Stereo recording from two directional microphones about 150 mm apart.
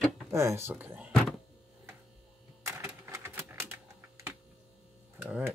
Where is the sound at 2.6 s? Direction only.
20° right (ahead or behind).